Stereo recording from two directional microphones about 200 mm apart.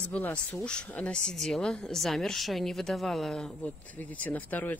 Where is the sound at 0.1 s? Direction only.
5° left (ahead or behind).